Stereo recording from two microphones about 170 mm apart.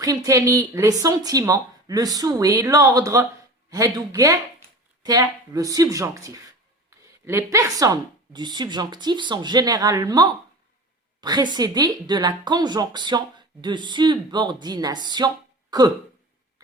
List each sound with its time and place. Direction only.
0.0 s speech: 20° right (ahead or behind)